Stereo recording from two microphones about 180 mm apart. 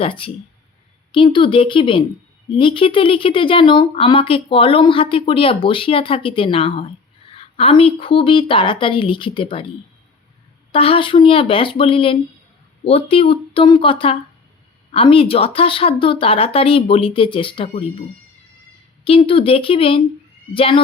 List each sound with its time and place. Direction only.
0.0 s speech: 30° left (ahead or behind)
10.7 s speech: 30° left (ahead or behind)
19.0 s speech: 30° left (ahead or behind)